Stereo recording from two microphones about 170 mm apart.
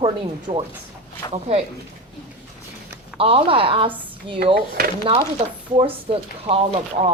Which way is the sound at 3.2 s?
35° right (ahead or behind).